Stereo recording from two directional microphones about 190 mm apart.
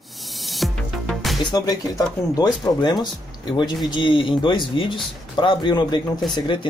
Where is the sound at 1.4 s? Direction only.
20° left (ahead or behind).